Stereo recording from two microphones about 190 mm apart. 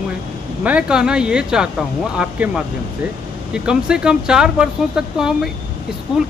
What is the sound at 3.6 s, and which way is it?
Speech, 5° right (ahead or behind).